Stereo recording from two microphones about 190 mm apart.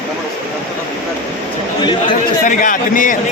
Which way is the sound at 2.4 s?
45° left (ahead or behind).